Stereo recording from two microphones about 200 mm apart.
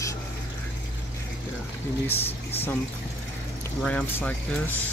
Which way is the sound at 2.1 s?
10° left (ahead or behind).